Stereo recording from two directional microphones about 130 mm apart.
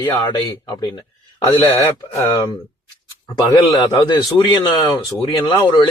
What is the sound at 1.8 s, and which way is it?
Speech, 20° left (ahead or behind).